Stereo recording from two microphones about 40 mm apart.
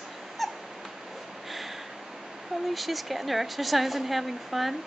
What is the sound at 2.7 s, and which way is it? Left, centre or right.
Speech, centre.